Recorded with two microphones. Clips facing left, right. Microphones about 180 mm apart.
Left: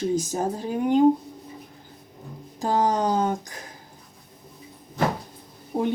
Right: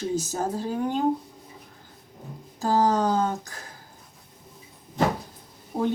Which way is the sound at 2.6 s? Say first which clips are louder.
Right 1 dB; 15° left (ahead or behind).